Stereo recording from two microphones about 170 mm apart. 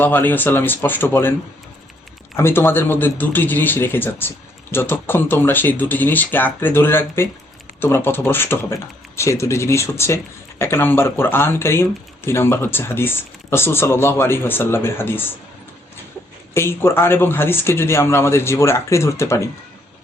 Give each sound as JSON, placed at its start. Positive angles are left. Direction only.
{"t": 0.0, "sound": "speech", "side_deg": 10}
{"t": 2.3, "sound": "speech", "side_deg": 15}
{"t": 16.6, "sound": "speech", "side_deg": 15}